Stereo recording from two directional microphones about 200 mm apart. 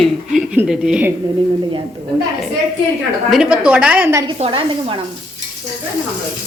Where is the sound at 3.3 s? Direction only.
5° right (ahead or behind).